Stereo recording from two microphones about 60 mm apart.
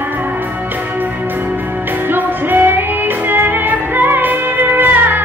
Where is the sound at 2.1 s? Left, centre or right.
Right.